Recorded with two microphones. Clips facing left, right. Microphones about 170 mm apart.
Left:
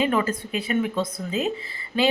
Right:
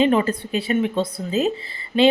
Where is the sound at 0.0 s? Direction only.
25° right (ahead or behind).